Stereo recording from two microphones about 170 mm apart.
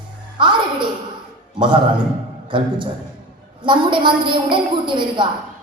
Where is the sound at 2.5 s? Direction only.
30° right (ahead or behind).